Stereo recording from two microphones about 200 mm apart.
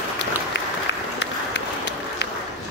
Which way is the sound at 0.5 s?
60° left (ahead or behind).